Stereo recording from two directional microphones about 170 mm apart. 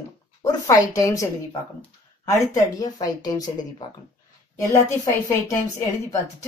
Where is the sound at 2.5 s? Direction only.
20° left (ahead or behind).